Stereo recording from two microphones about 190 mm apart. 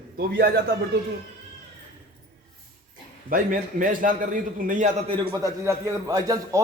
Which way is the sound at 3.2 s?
45° right (ahead or behind).